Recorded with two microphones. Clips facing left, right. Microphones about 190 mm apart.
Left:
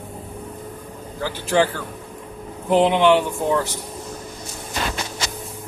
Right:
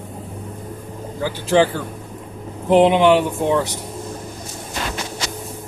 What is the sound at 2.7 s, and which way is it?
Speech, 25° right (ahead or behind).